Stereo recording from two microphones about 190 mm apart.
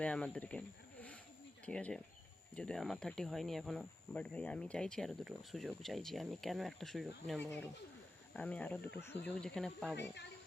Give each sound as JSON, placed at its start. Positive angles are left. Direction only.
{"t": 0.0, "sound": "speech", "side_deg": 5}